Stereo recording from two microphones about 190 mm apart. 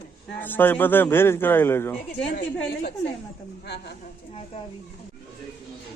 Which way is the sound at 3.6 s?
60° left (ahead or behind).